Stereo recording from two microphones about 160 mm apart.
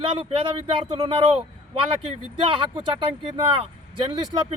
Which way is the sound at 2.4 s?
30° right (ahead or behind).